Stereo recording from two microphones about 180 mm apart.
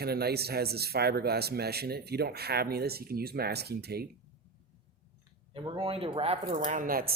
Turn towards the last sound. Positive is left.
turn(degrees=-55)  # may be behind; listen again after turning